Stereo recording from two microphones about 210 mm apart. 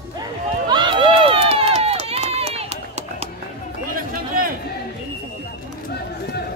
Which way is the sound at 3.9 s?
40° right (ahead or behind).